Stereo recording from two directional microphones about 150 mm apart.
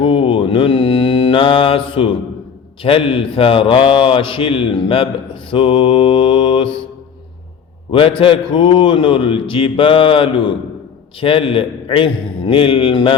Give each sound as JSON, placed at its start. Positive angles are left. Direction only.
{"t": 0.0, "sound": "mantra", "side_deg": 35}
{"t": 2.8, "sound": "a man's voice", "side_deg": 35}
{"t": 7.9, "sound": "a man's voice", "side_deg": 35}